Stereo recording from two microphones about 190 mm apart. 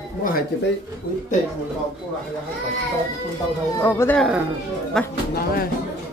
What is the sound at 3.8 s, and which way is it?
Speech, 10° left (ahead or behind).